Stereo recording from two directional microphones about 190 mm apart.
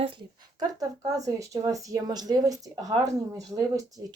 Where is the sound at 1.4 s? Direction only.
15° right (ahead or behind).